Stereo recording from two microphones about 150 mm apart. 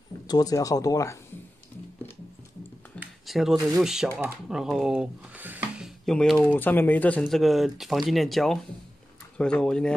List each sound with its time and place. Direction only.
0.3 s speech: 25° left (ahead or behind)
3.3 s speech: centre (ahead or behind)
6.0 s speech: 5° left (ahead or behind)